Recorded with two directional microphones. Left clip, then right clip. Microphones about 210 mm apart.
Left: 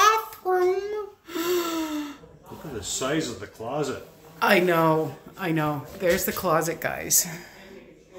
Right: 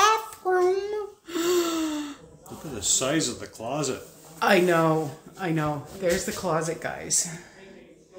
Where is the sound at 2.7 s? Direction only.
50° right (ahead or behind).